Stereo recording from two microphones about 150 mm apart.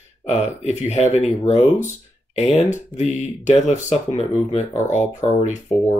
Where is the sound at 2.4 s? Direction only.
45° left (ahead or behind).